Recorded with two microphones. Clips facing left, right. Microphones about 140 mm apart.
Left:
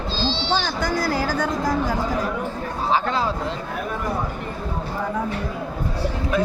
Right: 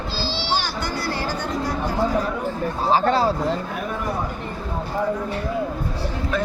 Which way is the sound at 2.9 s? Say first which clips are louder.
Right 4 dB; 35° right (ahead or behind).